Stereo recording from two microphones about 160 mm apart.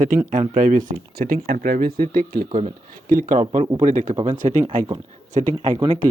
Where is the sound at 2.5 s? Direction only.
45° right (ahead or behind).